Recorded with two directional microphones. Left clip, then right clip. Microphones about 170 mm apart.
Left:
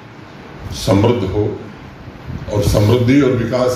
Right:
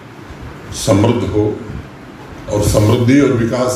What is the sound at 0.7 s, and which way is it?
Speech, 25° left (ahead or behind).